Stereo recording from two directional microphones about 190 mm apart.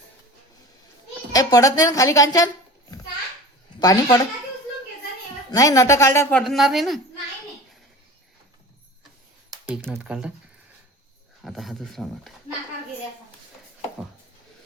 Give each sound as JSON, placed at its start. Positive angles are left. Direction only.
{"t": 1.3, "sound": "a woman's voice", "side_deg": 20}
{"t": 3.8, "sound": "speech", "side_deg": 20}
{"t": 5.5, "sound": "a woman's voice", "side_deg": 15}
{"t": 6.3, "sound": "speech", "side_deg": 0}
{"t": 9.7, "sound": "speech", "side_deg": 0}
{"t": 11.4, "sound": "speech", "side_deg": 0}